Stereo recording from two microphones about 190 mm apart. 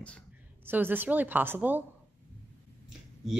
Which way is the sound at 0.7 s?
10° right (ahead or behind).